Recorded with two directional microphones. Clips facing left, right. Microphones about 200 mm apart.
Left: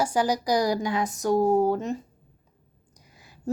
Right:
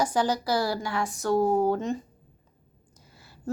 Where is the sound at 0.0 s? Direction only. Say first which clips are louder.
Left 1 dB; 10° left (ahead or behind).